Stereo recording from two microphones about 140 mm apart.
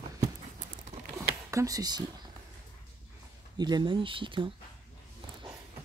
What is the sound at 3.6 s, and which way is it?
Speech, 30° right (ahead or behind).